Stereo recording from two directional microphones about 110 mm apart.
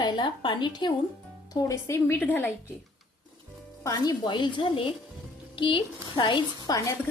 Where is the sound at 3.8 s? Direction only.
40° left (ahead or behind).